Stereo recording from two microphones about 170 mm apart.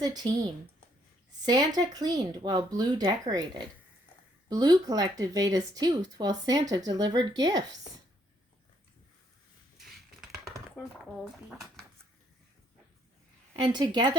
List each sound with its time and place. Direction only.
0.0 s speech: 25° right (ahead or behind)
4.4 s speech: 25° right (ahead or behind)
10.8 s speech: centre (ahead or behind)
13.6 s speech: 25° right (ahead or behind)